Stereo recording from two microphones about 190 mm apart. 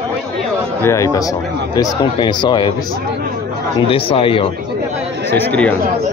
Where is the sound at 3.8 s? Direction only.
30° left (ahead or behind).